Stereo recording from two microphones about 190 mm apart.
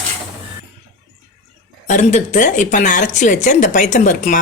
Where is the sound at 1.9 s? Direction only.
40° left (ahead or behind).